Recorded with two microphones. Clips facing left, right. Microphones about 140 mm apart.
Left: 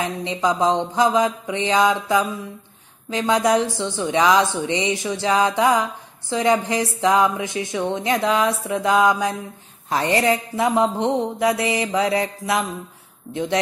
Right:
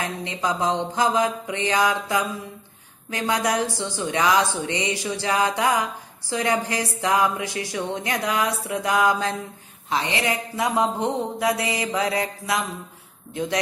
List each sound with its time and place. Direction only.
0.0 s speech: 20° left (ahead or behind)
9.8 s speech: 45° left (ahead or behind)
10.2 s speech: 25° left (ahead or behind)